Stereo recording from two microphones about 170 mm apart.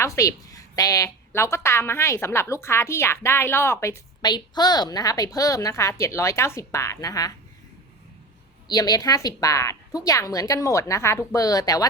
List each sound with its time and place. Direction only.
0.0 s a woman's voice: 20° left (ahead or behind)
8.6 s a woman's voice: 25° left (ahead or behind)